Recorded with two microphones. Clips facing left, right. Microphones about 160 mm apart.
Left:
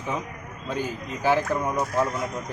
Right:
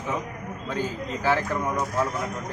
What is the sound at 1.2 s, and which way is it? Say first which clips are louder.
Speech: left 2 dB; 15° left (ahead or behind).